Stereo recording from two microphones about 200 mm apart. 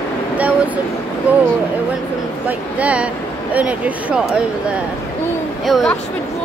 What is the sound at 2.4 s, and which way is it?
Speech, 5° right (ahead or behind).